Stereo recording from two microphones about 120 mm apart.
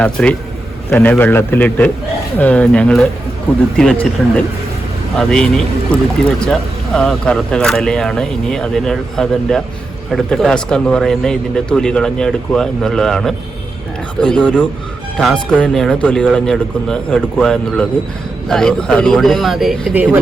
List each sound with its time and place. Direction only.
0.0 s a man's voice: 10° left (ahead or behind)